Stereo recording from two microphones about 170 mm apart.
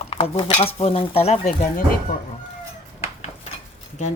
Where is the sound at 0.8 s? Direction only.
35° left (ahead or behind).